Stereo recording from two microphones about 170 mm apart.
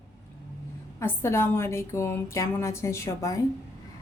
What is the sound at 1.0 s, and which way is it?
A woman's voice, 15° left (ahead or behind).